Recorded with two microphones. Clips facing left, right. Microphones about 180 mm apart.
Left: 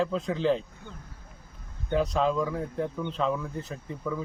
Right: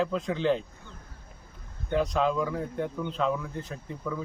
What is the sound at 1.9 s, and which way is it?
Speech, centre (ahead or behind).